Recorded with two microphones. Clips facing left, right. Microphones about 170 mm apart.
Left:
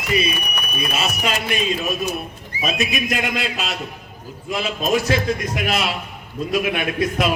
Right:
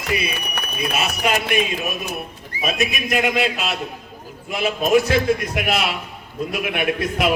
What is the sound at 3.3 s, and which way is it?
Speech, 60° right (ahead or behind).